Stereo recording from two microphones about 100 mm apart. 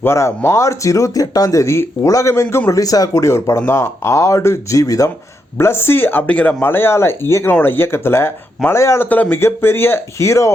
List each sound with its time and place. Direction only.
0.0 s speech: 25° left (ahead or behind)
9.0 s speech: 15° left (ahead or behind)